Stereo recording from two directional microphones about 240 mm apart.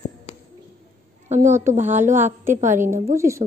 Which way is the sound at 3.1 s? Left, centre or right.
Centre.